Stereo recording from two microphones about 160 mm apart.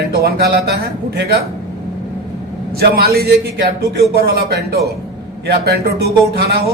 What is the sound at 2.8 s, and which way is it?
Speech, 75° right (ahead or behind).